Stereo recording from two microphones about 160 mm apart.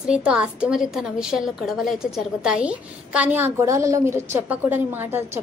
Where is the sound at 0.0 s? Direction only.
5° right (ahead or behind).